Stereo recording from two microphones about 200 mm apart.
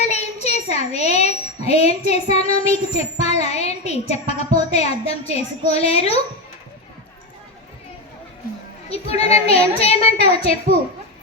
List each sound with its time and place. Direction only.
0.0 s a child's voice: 35° left (ahead or behind)
8.9 s a woman's voice: 30° left (ahead or behind)